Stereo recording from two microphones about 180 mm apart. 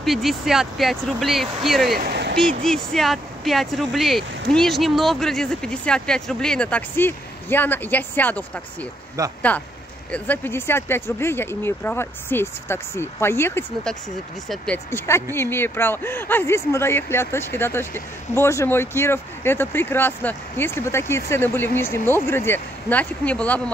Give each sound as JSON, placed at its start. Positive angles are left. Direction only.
{"t": 0.0, "sound": "speech", "side_deg": 0}
{"t": 1.9, "sound": "a sound", "side_deg": -60}
{"t": 2.6, "sound": "speech", "side_deg": 0}
{"t": 9.2, "sound": "speech", "side_deg": -20}
{"t": 10.1, "sound": "speech", "side_deg": 10}
{"t": 14.9, "sound": "speech", "side_deg": 15}